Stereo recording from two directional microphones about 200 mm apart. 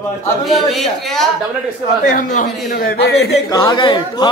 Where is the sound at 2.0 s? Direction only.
40° left (ahead or behind).